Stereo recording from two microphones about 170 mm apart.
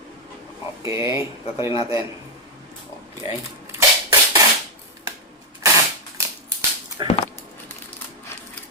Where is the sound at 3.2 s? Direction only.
20° right (ahead or behind).